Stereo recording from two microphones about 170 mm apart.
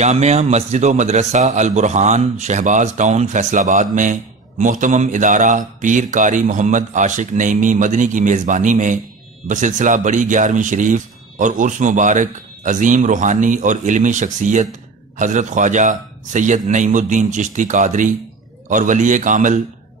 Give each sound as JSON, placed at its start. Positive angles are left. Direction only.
{"t": 0.0, "sound": "a man's voice", "side_deg": -40}